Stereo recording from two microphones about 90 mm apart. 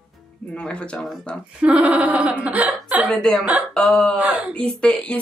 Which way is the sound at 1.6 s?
15° right (ahead or behind).